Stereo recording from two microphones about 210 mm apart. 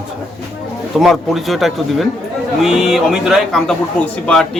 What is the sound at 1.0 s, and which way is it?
Speech, centre (ahead or behind).